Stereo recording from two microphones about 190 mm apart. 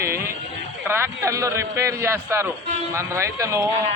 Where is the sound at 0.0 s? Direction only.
15° right (ahead or behind).